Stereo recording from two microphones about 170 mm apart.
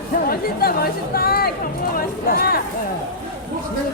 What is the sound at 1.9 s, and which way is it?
Music, 60° left (ahead or behind).